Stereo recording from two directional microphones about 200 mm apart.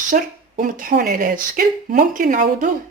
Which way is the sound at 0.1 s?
40° right (ahead or behind).